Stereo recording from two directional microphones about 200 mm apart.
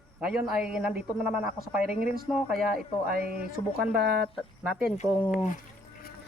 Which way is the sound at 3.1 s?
50° right (ahead or behind).